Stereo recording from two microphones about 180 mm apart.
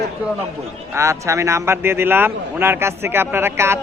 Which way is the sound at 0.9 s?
15° right (ahead or behind).